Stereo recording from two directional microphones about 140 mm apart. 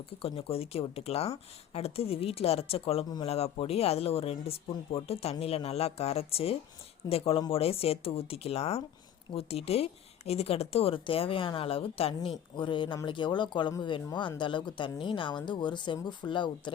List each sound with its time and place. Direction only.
0.2 s speech: 45° left (ahead or behind)